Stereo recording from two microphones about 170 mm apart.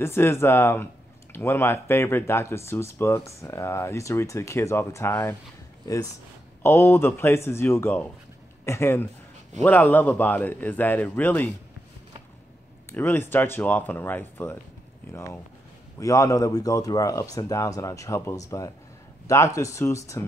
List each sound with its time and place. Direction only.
0.0 s speech: 15° left (ahead or behind)
6.6 s speech: 15° left (ahead or behind)
12.9 s speech: 10° left (ahead or behind)